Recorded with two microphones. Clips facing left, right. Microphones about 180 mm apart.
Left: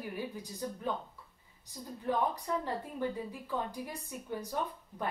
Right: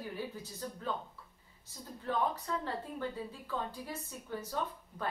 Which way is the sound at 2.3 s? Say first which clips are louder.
Left 2 dB; 15° left (ahead or behind).